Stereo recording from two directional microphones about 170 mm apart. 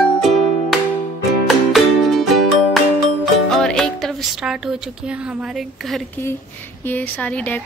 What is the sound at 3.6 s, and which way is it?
Speech, 5° left (ahead or behind).